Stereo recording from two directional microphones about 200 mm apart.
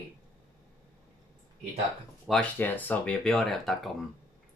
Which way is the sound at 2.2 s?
5° left (ahead or behind).